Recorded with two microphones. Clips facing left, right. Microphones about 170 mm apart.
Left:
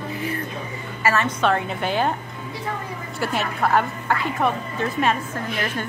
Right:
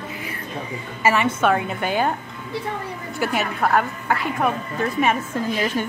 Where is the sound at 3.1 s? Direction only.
Centre (ahead or behind).